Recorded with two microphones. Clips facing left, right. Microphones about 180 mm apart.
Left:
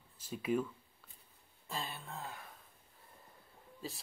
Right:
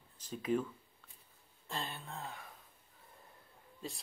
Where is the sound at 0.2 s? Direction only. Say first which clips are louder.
Even; 10° left (ahead or behind).